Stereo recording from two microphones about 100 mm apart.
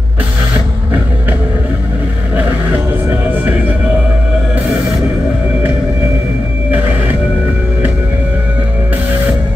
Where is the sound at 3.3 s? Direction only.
20° right (ahead or behind).